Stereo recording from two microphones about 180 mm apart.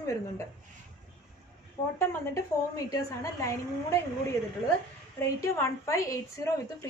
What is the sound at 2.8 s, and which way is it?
A woman's voice, 20° left (ahead or behind).